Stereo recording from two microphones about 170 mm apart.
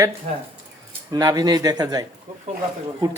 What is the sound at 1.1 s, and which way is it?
Speech, 20° right (ahead or behind).